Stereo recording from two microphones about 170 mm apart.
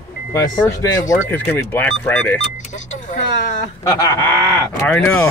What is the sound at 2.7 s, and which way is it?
Vehicle, 45° left (ahead or behind).